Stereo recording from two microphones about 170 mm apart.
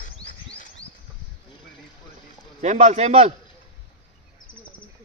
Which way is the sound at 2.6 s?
40° right (ahead or behind).